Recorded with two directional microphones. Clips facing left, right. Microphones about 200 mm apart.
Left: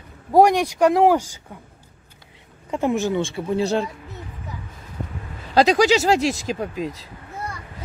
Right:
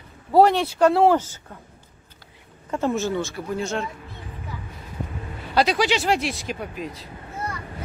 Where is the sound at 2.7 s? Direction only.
15° left (ahead or behind).